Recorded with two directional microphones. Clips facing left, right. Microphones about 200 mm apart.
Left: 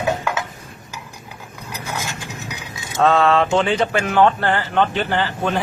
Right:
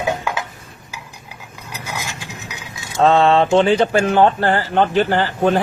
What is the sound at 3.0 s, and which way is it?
Speech, 30° right (ahead or behind).